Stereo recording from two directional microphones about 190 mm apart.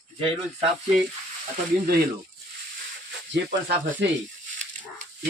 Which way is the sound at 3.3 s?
75° right (ahead or behind).